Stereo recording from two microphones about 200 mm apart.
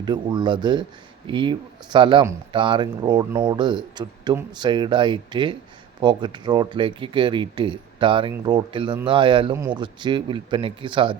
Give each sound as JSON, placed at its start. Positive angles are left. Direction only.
{"t": 0.0, "sound": "speech", "side_deg": -20}